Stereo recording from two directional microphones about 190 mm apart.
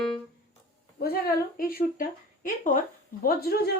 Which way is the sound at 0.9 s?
55° left (ahead or behind).